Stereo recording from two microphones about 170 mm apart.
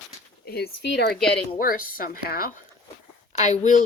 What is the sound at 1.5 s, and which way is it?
Speech, 55° left (ahead or behind).